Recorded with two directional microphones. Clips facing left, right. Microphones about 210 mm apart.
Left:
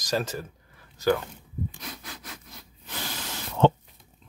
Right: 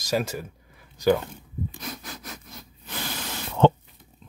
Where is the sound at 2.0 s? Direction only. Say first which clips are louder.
Right 3 dB; 45° right (ahead or behind).